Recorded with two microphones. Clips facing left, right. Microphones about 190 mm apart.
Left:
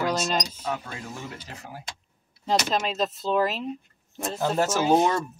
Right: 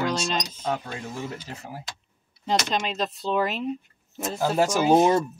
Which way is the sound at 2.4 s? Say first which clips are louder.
Left 1 dB; 5° left (ahead or behind).